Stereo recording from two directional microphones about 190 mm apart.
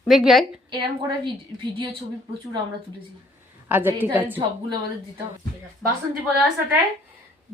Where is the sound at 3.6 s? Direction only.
10° right (ahead or behind).